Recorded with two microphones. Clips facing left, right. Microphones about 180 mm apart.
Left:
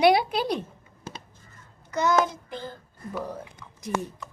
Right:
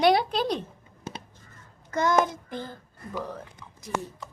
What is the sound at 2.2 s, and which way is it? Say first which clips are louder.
Child singing: even; 50° right (ahead or behind).